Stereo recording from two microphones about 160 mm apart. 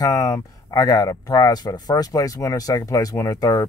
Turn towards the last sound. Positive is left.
turn(degrees=20)  # may be behind; listen again after turning